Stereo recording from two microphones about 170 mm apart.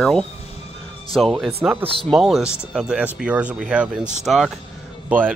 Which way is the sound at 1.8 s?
30° right (ahead or behind).